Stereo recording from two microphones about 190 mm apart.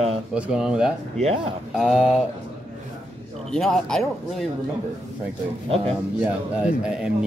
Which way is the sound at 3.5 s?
Centre (ahead or behind).